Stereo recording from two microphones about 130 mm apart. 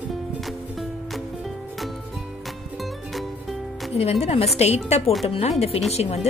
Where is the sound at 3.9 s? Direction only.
55° left (ahead or behind).